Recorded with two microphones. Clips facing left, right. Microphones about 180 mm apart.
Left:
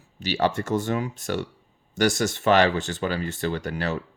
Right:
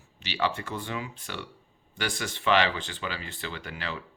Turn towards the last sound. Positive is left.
turn(degrees=45)  # may be behind; listen again after turning